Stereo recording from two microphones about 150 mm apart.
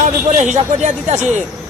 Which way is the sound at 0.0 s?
55° right (ahead or behind).